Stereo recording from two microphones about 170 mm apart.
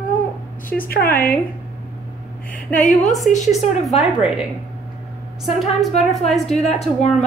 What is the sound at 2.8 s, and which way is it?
Speech, 45° left (ahead or behind).